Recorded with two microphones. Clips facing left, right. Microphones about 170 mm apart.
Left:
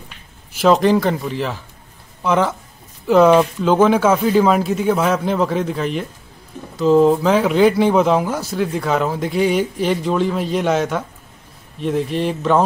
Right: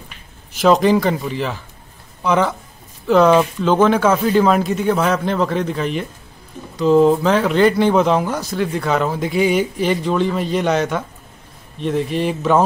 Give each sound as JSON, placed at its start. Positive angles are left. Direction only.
{"t": 0.6, "sound": "speech", "side_deg": 0}